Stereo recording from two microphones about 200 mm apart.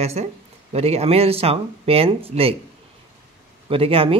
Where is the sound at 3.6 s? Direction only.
30° right (ahead or behind).